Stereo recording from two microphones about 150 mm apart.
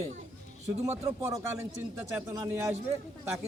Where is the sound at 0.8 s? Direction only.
20° right (ahead or behind).